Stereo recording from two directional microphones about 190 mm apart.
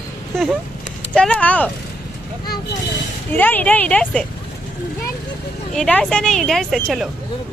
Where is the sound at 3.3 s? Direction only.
10° left (ahead or behind).